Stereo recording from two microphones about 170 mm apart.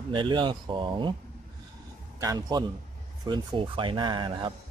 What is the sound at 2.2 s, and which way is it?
A man's voice, 20° right (ahead or behind).